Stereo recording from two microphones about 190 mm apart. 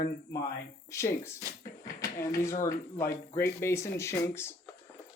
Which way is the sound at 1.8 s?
15° left (ahead or behind).